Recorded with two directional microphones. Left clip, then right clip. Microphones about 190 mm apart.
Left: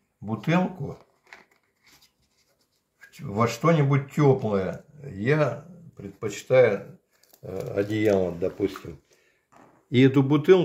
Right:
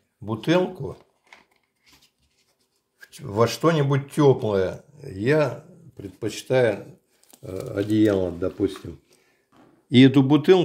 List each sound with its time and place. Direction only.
3.3 s speech: 50° right (ahead or behind)
7.7 s speech: 35° right (ahead or behind)
9.8 s speech: 35° right (ahead or behind)